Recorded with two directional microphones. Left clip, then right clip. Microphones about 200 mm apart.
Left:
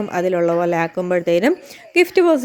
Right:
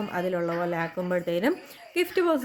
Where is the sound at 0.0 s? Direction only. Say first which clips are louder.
Left 10 dB; 40° left (ahead or behind).